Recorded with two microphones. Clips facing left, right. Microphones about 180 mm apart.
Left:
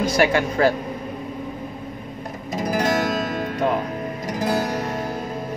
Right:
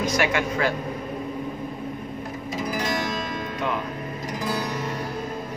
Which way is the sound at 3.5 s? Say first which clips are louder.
Left 6 dB; 40° left (ahead or behind).